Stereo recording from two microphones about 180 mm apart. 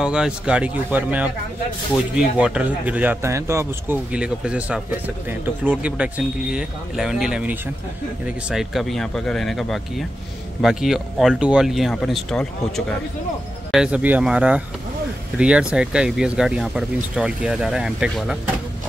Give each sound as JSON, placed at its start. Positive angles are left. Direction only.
{"t": 0.0, "sound": "speech", "side_deg": -5}